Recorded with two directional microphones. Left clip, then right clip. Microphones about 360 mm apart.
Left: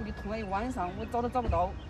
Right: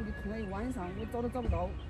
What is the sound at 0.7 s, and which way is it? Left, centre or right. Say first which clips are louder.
Speech: left 6 dB; centre.